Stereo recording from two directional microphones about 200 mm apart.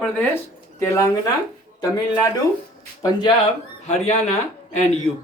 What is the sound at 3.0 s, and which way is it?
Speech, 20° left (ahead or behind).